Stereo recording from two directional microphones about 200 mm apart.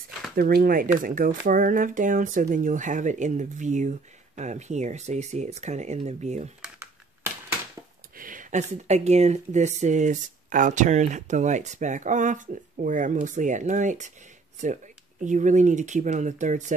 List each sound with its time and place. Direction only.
0.4 s speech: 45° right (ahead or behind)
8.2 s speech: 40° right (ahead or behind)